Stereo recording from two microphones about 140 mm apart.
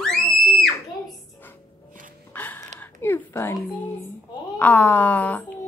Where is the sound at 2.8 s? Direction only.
15° left (ahead or behind).